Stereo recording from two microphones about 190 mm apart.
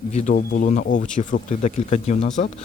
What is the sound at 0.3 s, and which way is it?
Speech, 50° left (ahead or behind).